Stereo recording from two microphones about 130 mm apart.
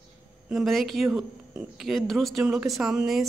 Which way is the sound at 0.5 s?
Centre (ahead or behind).